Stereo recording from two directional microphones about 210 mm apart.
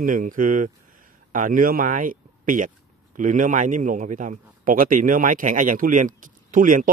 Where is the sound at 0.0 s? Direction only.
40° right (ahead or behind).